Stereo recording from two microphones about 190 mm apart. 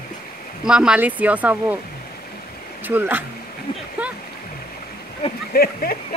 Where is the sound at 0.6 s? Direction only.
5° right (ahead or behind).